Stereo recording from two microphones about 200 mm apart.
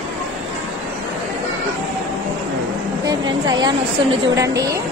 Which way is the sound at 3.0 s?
20° right (ahead or behind).